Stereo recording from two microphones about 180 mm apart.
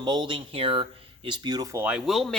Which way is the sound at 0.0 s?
25° right (ahead or behind).